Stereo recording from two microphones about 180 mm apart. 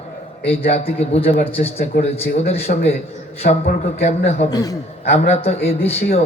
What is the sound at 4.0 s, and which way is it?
Speech, 35° left (ahead or behind).